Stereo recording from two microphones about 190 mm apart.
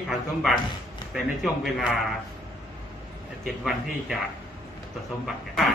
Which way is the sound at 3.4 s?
Centre (ahead or behind).